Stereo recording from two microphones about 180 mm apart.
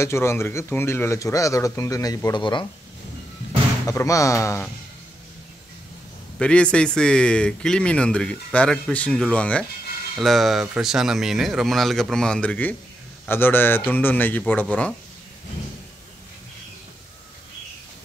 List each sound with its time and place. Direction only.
0.0 s speech: 15° left (ahead or behind)
3.8 s speech: 15° left (ahead or behind)
6.3 s speech: 5° left (ahead or behind)